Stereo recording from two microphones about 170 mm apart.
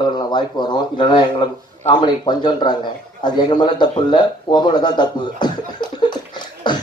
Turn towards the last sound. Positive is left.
turn(degrees=25)  # may be behind; listen again after turning